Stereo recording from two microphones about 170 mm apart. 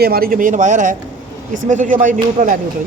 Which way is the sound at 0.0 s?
60° right (ahead or behind).